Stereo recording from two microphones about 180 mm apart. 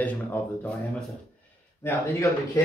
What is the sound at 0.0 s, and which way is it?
Speech, 10° left (ahead or behind).